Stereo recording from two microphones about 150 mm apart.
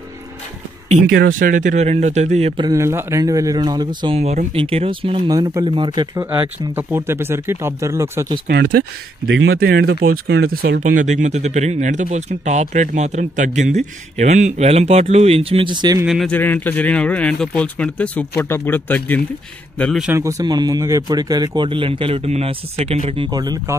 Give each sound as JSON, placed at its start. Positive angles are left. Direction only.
{"t": 0.8, "sound": "speech", "side_deg": -80}
{"t": 2.6, "sound": "speech", "side_deg": -20}
{"t": 4.2, "sound": "a man's voice", "side_deg": -45}
{"t": 5.3, "sound": "speech", "side_deg": -25}
{"t": 6.7, "sound": "speech", "side_deg": -15}
{"t": 8.5, "sound": "speech", "side_deg": -90}
{"t": 16.1, "sound": "speech", "side_deg": 0}
{"t": 16.3, "sound": "speech", "side_deg": 10}
{"t": 20.1, "sound": "a man's voice", "side_deg": -20}
{"t": 23.3, "sound": "speech", "side_deg": -25}